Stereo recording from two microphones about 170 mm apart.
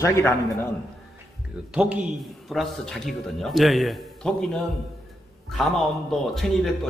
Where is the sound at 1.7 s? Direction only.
5° right (ahead or behind).